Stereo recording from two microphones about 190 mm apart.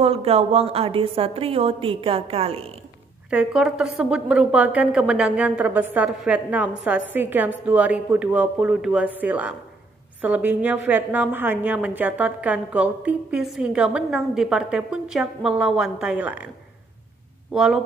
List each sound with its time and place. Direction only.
0.0 s a woman's voice: 30° right (ahead or behind)
3.3 s a woman's voice: 5° right (ahead or behind)
17.5 s speech: 5° right (ahead or behind)